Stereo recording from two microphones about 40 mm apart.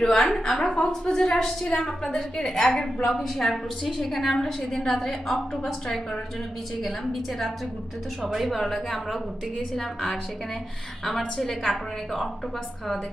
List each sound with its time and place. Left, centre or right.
0.0 s a woman's voice: centre
9.7 s a woman's voice: centre